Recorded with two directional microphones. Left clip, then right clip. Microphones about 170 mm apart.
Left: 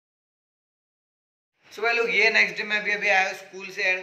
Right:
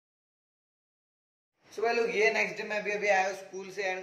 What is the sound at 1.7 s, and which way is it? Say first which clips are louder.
A man's voice: left 5 dB; 20° right (ahead or behind).